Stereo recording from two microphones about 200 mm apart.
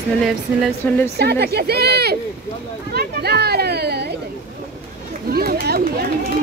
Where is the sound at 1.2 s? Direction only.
55° right (ahead or behind).